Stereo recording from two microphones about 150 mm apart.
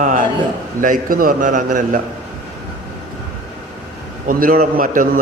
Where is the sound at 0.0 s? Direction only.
60° right (ahead or behind).